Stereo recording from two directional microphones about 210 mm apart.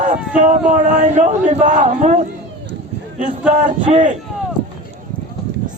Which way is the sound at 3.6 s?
35° right (ahead or behind).